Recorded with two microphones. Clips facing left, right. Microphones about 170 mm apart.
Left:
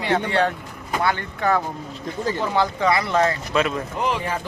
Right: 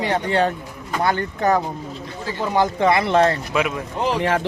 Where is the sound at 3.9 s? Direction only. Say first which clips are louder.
Right 3 dB; 30° right (ahead or behind).